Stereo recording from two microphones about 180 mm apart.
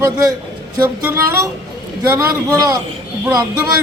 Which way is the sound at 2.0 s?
20° right (ahead or behind).